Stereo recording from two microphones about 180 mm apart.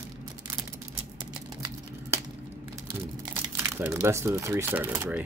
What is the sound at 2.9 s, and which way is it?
Speech, 15° right (ahead or behind).